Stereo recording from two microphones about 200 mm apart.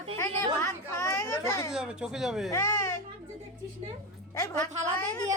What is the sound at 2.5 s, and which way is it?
Speech, 15° left (ahead or behind).